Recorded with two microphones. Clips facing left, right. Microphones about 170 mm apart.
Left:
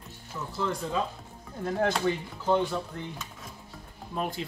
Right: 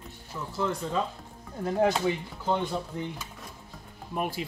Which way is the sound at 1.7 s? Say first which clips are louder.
Right 2 dB; 15° right (ahead or behind).